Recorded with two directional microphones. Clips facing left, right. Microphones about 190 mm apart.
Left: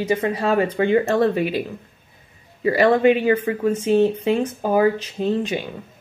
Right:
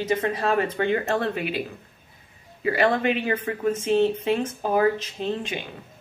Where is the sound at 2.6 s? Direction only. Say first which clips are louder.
Left 6 dB; 35° left (ahead or behind).